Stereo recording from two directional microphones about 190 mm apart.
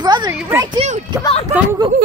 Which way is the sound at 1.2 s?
30° left (ahead or behind).